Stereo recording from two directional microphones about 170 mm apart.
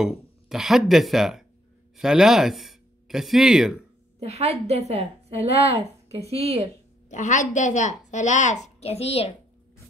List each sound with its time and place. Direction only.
0.0 s speech: centre (ahead or behind)
4.2 s a woman's voice: 40° right (ahead or behind)
7.1 s a woman's voice: 45° left (ahead or behind)